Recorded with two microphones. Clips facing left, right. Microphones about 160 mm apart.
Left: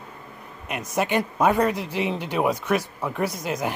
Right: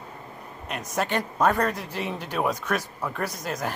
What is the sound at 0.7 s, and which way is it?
Speech, 10° left (ahead or behind).